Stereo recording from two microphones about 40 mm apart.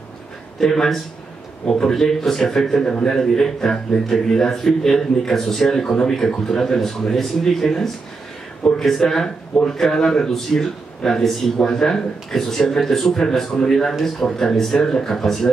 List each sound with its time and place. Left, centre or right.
0.6 s speech: centre
3.2 s speech: centre